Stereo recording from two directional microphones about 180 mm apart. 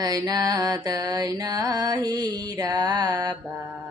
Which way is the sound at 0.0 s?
20° right (ahead or behind).